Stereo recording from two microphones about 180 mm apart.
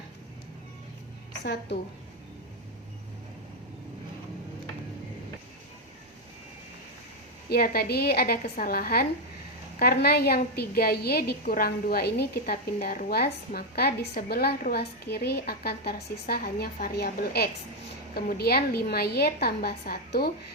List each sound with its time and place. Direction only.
1.3 s a woman's voice: 75° left (ahead or behind)
7.5 s a woman's voice: 55° left (ahead or behind)